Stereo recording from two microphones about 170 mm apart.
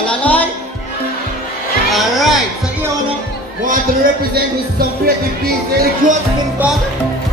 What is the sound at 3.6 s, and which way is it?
Speech, 55° right (ahead or behind).